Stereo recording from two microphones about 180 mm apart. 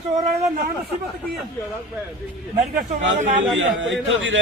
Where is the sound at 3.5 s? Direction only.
90° right.